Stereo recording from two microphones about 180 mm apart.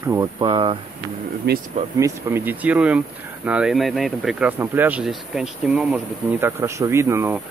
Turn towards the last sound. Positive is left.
turn(degrees=-15)  # may be behind; listen again after turning